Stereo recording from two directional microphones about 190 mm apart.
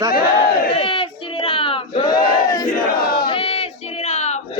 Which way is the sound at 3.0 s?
50° left (ahead or behind).